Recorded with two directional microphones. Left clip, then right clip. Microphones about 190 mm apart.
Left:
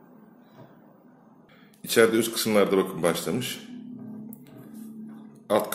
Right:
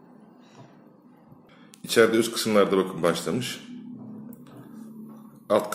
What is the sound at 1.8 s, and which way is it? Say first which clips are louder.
A man's voice: right 1 dB; centre (ahead or behind).